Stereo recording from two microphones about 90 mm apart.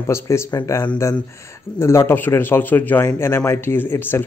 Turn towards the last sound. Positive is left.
turn(degrees=25)  # may be behind; listen again after turning